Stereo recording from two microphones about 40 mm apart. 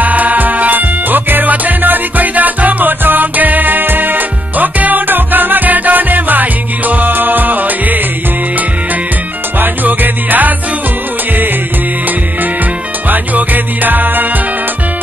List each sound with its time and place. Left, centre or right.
0.0 s music: right
9.6 s music: right
13.1 s music: right